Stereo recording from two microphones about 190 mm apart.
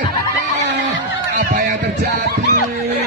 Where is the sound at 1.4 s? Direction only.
50° right (ahead or behind).